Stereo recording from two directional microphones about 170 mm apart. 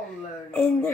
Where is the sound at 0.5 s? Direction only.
10° left (ahead or behind).